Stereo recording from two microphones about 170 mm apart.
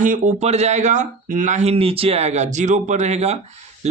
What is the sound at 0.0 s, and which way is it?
Speech, 45° right (ahead or behind).